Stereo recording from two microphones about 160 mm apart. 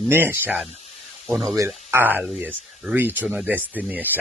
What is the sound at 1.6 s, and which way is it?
Speech, 10° right (ahead or behind).